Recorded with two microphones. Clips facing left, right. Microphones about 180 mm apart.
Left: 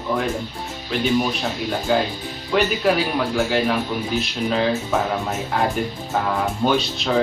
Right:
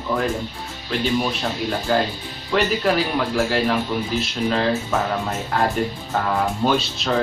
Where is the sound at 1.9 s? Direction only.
Centre (ahead or behind).